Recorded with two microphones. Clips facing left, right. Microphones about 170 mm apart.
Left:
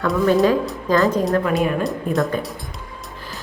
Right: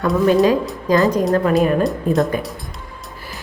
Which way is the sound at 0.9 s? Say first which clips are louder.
Right 2 dB; 15° right (ahead or behind).